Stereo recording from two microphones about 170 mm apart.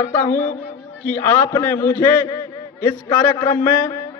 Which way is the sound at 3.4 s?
15° left (ahead or behind).